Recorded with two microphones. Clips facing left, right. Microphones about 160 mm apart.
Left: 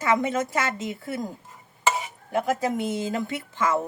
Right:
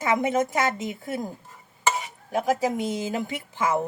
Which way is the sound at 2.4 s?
15° right (ahead or behind).